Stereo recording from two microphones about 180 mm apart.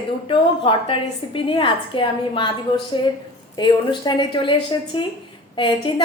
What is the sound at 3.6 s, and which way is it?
Speech, 25° left (ahead or behind).